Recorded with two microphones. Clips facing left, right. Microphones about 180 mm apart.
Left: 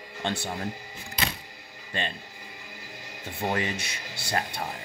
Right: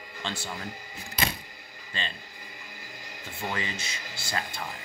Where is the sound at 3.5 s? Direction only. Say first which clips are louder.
Left 5 dB; 55° left (ahead or behind).